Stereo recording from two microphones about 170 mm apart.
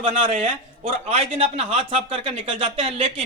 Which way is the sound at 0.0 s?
40° right (ahead or behind).